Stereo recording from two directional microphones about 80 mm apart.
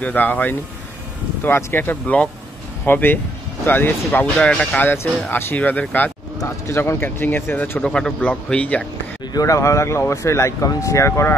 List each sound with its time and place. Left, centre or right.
0.0 s speech: left
6.4 s speech: left
7.8 s a man's voice: centre
9.3 s speech: left